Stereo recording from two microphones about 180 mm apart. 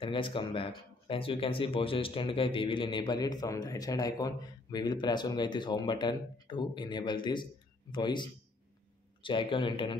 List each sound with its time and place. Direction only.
0.0 s speech: 30° left (ahead or behind)